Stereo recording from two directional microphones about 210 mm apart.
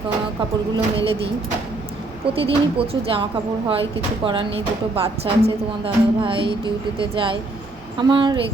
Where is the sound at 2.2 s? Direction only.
25° right (ahead or behind).